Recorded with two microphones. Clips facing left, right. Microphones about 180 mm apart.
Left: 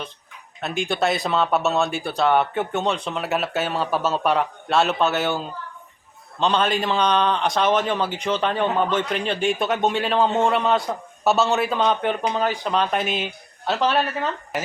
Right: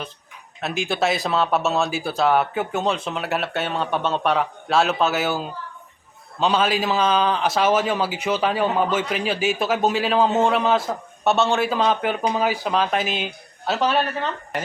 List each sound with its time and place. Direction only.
0.6 s a man's voice: centre (ahead or behind)